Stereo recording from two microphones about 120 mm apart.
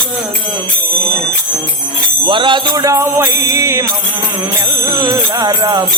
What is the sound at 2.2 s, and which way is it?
Music, 40° right (ahead or behind).